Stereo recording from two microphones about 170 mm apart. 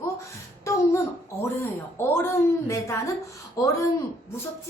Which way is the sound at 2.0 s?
15° left (ahead or behind).